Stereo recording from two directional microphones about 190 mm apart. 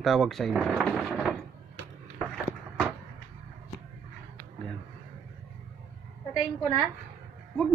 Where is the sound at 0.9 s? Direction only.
5° right (ahead or behind).